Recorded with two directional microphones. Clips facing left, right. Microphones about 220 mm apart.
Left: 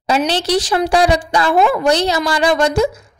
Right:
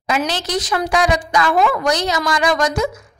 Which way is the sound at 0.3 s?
30° left (ahead or behind).